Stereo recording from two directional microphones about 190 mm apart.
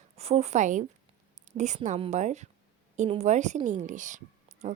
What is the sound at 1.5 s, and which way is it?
A woman's voice, 40° right (ahead or behind).